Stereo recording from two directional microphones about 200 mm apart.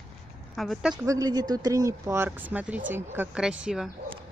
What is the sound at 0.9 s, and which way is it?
Speech, 15° right (ahead or behind).